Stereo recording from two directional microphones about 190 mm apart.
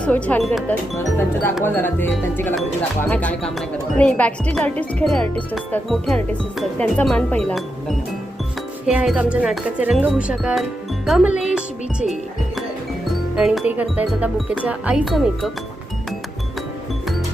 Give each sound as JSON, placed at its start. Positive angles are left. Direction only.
{"t": 0.0, "sound": "speech", "side_deg": 5}
{"t": 11.3, "sound": "music", "side_deg": -5}
{"t": 13.3, "sound": "speech", "side_deg": 0}